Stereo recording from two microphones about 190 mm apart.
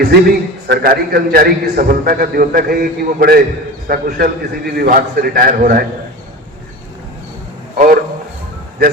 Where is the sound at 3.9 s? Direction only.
50° right (ahead or behind).